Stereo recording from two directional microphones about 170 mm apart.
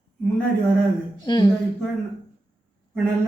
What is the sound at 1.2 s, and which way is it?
Speech, 25° left (ahead or behind).